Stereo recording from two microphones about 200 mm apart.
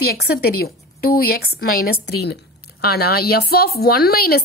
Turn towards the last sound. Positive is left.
turn(degrees=50)  # may be behind; listen again after turning